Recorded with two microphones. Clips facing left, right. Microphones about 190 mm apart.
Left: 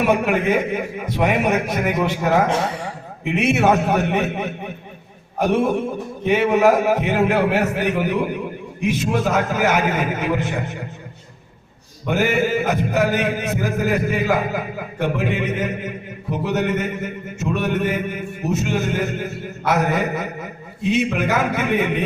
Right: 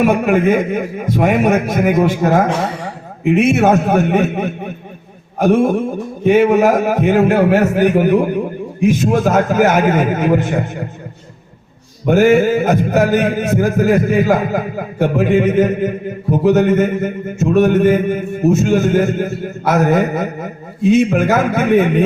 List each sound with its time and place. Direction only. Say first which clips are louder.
0.0 s a man's voice: right 5 dB; 45° right (ahead or behind)
12.0 s a man's voice: right 9 dB; 45° right (ahead or behind)